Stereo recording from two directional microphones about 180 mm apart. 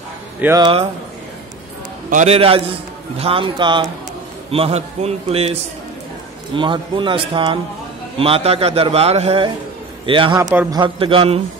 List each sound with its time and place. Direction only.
0.4 s speech: 15° right (ahead or behind)
2.0 s a man's voice: 40° right (ahead or behind)